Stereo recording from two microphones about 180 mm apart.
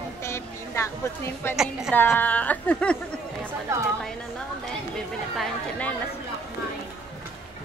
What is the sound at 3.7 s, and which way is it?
Speech, 15° right (ahead or behind).